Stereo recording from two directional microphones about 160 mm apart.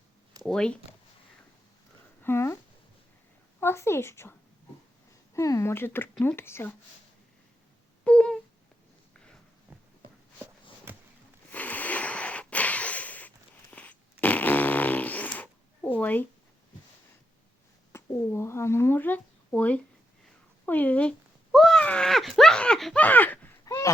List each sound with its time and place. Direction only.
0.4 s speech: 5° left (ahead or behind)
2.2 s speech: 15° left (ahead or behind)
3.6 s speech: 15° left (ahead or behind)
8.0 s a sound: 5° left (ahead or behind)
11.5 s a sound: 10° left (ahead or behind)
16.0 s speech: 10° left (ahead or behind)
17.9 s speech: 15° left (ahead or behind)